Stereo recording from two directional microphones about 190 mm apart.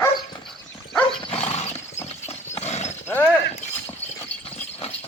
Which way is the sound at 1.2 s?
30° left (ahead or behind).